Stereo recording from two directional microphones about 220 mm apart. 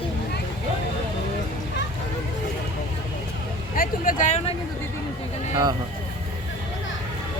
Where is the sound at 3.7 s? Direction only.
40° left (ahead or behind).